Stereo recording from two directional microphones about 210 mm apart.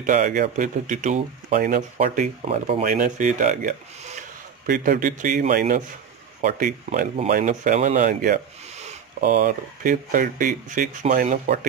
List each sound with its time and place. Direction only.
0.0 s speech: 40° right (ahead or behind)